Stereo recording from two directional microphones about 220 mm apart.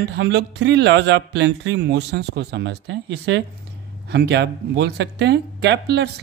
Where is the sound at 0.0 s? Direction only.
50° right (ahead or behind).